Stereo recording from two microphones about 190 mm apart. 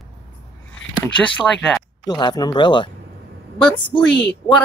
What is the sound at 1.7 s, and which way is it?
Speech, 20° left (ahead or behind).